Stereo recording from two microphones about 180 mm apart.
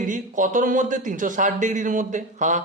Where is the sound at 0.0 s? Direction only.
45° right (ahead or behind).